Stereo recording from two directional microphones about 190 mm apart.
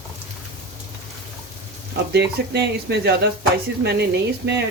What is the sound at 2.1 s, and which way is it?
Speech, 60° right (ahead or behind).